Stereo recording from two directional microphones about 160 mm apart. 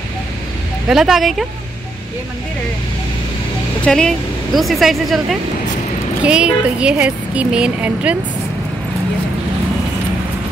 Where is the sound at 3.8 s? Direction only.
5° left (ahead or behind).